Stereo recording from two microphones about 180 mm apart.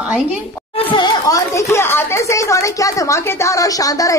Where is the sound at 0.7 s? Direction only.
30° left (ahead or behind).